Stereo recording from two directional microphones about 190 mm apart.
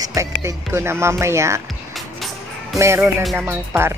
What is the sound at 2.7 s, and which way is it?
Speech, 15° right (ahead or behind).